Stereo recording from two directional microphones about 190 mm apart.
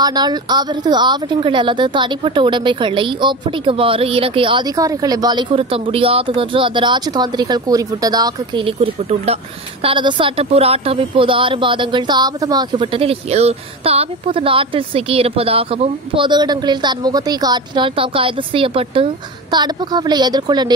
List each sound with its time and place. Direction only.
0.0 s a woman's voice: 20° right (ahead or behind)